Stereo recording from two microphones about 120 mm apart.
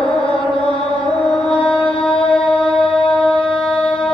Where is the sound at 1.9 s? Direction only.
5° left (ahead or behind).